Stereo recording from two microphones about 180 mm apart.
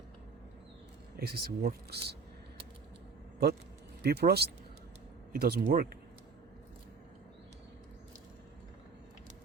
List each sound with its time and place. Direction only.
1.1 s speech: 60° right (ahead or behind)
4.0 s speech: 60° right (ahead or behind)